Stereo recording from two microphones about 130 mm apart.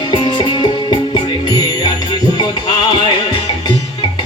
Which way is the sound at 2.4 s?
35° left (ahead or behind).